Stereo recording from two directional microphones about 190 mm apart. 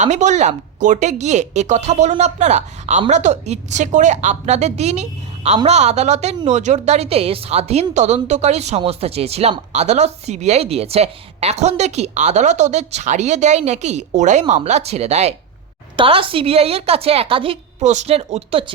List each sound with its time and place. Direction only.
0.0 s a woman's voice: 40° right (ahead or behind)